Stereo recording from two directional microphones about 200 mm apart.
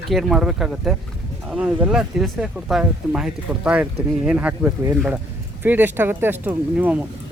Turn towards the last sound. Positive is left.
turn(degrees=-5)  # may be behind; listen again after turning